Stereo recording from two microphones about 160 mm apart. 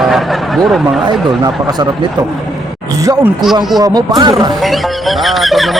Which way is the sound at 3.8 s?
25° right (ahead or behind).